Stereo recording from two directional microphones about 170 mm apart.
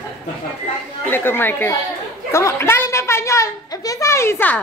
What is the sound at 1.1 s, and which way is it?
Speech, 10° left (ahead or behind).